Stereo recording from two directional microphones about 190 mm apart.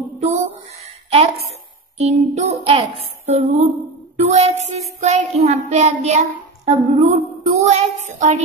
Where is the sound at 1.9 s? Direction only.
35° right (ahead or behind).